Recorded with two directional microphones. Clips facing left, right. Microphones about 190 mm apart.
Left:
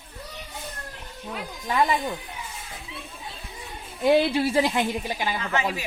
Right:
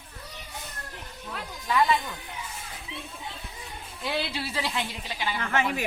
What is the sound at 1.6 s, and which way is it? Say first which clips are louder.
Speech: left 1 dB; 40° left (ahead or behind).